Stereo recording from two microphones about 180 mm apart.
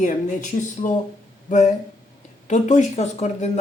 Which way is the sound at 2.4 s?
45° left (ahead or behind).